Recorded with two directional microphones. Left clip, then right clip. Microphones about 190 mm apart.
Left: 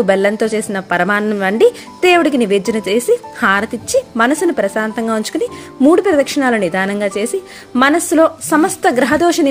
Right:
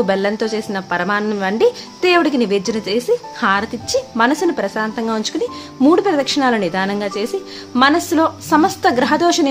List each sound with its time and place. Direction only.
0.0 s a woman's voice: 15° left (ahead or behind)